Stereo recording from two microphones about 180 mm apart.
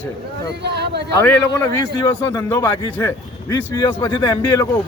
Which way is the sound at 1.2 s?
15° left (ahead or behind).